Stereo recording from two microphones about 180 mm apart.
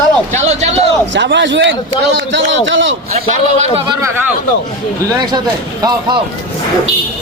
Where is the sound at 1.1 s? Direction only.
75° right (ahead or behind).